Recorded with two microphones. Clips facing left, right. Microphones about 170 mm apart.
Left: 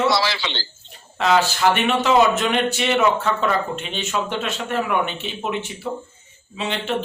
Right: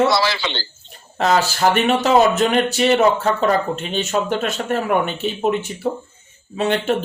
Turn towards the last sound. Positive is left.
turn(degrees=-50)  # may be behind; listen again after turning